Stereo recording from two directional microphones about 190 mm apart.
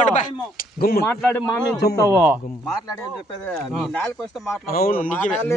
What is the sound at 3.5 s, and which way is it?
A man's voice, centre (ahead or behind).